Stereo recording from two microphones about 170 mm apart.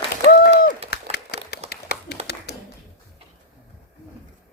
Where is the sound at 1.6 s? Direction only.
40° right (ahead or behind).